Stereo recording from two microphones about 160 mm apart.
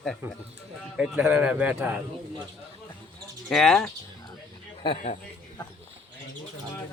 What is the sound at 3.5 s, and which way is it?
Speech, 5° left (ahead or behind).